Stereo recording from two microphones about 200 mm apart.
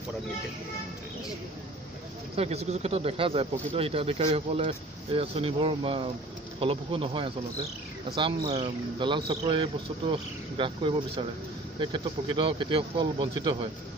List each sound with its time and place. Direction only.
2.3 s speech: 30° right (ahead or behind)